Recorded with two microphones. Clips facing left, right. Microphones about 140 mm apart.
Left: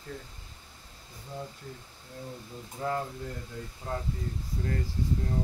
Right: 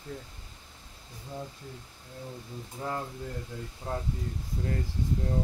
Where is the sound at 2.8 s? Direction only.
10° right (ahead or behind).